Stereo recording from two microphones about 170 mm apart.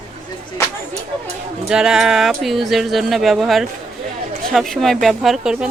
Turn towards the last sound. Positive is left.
turn(degrees=-5)  # may be behind; listen again after turning